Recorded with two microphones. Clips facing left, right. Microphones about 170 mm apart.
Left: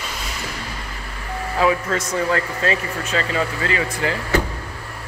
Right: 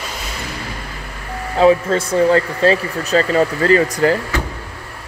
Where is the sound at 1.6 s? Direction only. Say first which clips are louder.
Right 7 dB; 30° right (ahead or behind).